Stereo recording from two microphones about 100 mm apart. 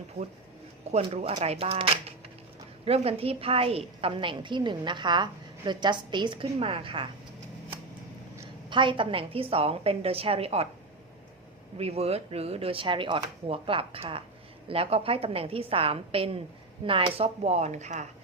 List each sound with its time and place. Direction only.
0.9 s a woman's voice: 90° right; by 7.1 s 60° right (ahead or behind)
8.7 s speech: 55° right (ahead or behind); by 10.7 s 85° right
11.8 s speech: 90° right